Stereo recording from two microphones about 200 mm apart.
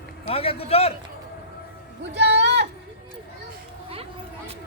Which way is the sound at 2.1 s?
60° right (ahead or behind).